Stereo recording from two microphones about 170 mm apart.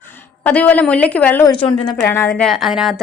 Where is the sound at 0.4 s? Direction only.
10° left (ahead or behind).